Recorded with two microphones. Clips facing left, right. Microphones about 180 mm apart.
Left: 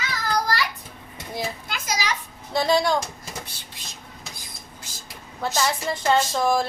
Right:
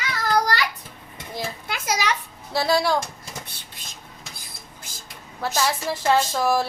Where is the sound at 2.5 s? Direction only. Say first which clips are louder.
Left 1 dB; 5° right (ahead or behind).